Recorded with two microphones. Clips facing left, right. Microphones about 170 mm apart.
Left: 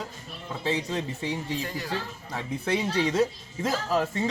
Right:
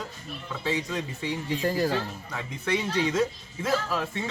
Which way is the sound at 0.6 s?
30° left (ahead or behind).